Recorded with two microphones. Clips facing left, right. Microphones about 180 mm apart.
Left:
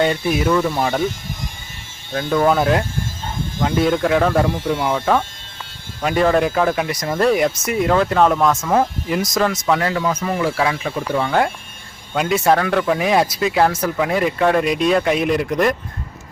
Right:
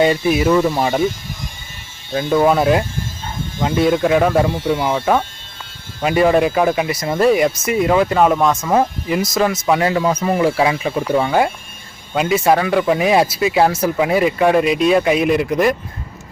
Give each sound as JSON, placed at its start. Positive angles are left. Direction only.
{"t": 0.0, "sound": "speech", "side_deg": -10}
{"t": 2.1, "sound": "speech", "side_deg": -10}
{"t": 9.6, "sound": "speech", "side_deg": -15}